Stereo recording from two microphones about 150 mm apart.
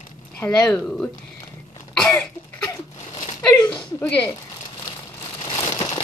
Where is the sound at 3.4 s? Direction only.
5° left (ahead or behind).